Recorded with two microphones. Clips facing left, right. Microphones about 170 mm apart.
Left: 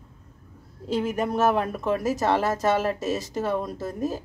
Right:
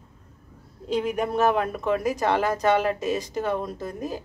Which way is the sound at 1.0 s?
Centre (ahead or behind).